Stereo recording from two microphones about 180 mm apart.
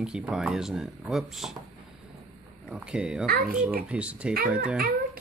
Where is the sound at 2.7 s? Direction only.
5° right (ahead or behind).